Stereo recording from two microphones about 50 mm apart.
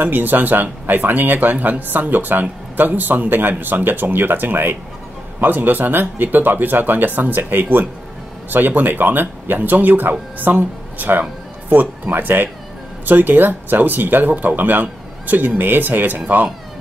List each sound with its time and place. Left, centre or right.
0.0 s speech: right